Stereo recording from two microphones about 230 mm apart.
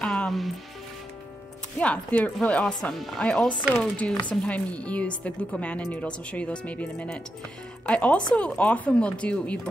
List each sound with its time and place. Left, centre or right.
0.0 s music: centre
1.8 s speech: centre